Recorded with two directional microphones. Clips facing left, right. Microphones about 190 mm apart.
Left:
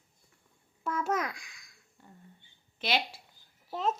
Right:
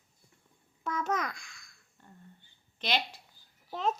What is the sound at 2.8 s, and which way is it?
A child's voice, 10° left (ahead or behind).